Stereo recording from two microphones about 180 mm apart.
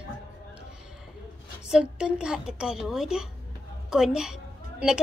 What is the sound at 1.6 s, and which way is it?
A woman's voice, 5° right (ahead or behind).